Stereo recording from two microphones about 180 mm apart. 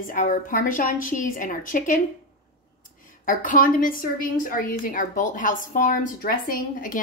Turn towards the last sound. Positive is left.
turn(degrees=50)  # may be behind; listen again after turning